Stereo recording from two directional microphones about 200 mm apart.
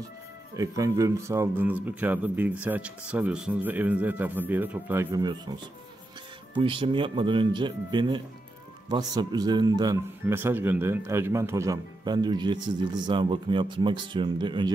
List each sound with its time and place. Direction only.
0.6 s speech: 15° right (ahead or behind)
6.6 s speech: 25° right (ahead or behind)